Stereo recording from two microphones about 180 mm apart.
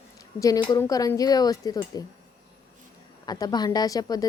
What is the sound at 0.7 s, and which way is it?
Speech, 20° left (ahead or behind).